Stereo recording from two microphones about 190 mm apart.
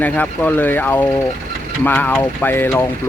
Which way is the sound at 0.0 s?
10° left (ahead or behind).